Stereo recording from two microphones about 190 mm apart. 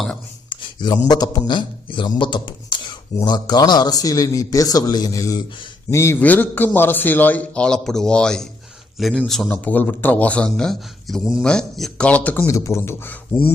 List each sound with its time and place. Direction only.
0.5 s a man's voice: 20° left (ahead or behind)